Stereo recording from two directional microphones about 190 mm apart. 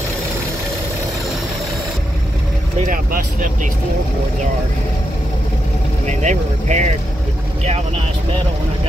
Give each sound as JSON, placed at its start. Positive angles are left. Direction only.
{"t": 2.9, "sound": "speech", "side_deg": -45}
{"t": 6.0, "sound": "speech", "side_deg": -40}